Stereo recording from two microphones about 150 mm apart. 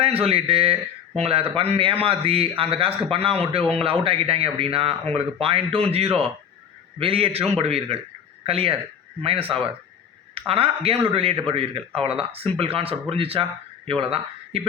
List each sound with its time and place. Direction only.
0.0 s speech: 40° right (ahead or behind)